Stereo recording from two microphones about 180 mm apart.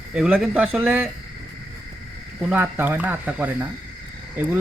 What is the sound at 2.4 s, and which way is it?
Speech, 10° right (ahead or behind).